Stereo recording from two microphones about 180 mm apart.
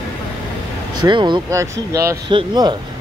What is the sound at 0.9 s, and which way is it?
Speech, 25° right (ahead or behind).